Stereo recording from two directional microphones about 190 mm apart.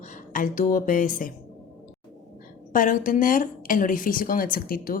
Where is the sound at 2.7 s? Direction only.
45° left (ahead or behind).